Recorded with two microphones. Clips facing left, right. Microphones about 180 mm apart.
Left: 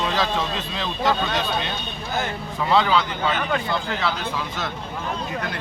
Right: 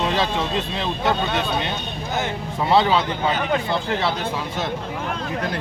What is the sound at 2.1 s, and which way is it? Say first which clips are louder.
Speech: right 1 dB; 20° right (ahead or behind).